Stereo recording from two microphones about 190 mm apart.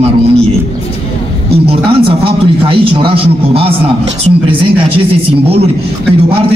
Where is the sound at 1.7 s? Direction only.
30° right (ahead or behind).